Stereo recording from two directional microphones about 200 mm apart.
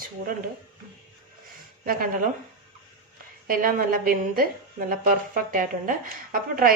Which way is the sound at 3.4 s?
45° right (ahead or behind).